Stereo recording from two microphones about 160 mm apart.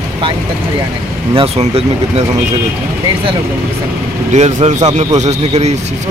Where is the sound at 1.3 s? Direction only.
40° right (ahead or behind).